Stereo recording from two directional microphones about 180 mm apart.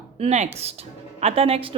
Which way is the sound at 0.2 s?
40° right (ahead or behind).